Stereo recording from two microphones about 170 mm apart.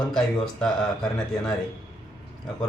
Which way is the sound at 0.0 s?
5° left (ahead or behind).